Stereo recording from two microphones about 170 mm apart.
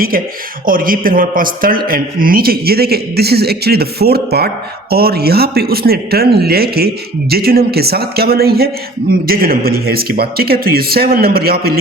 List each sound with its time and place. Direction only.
0.6 s speech: 55° right (ahead or behind)